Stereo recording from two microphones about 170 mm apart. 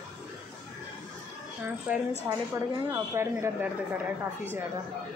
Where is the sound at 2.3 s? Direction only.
20° right (ahead or behind).